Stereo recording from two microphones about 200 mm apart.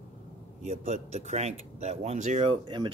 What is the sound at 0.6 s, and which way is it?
Speech, 35° right (ahead or behind).